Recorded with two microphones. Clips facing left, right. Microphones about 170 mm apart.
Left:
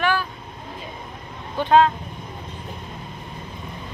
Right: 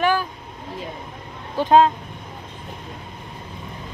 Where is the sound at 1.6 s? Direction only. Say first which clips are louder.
Right 1 dB; 35° right (ahead or behind).